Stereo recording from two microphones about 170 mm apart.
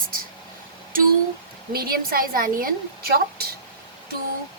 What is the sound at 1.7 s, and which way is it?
A woman's voice, 60° right (ahead or behind).